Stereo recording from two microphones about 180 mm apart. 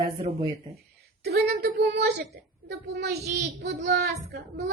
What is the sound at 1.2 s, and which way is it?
Speech, 65° right (ahead or behind).